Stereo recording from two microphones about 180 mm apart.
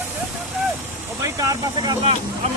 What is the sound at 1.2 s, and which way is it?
Vehicle, 15° right (ahead or behind).